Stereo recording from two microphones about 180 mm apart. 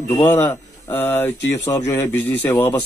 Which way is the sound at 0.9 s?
10° left (ahead or behind).